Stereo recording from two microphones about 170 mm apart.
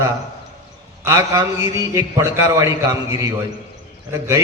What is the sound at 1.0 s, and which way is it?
A man's voice, 20° right (ahead or behind).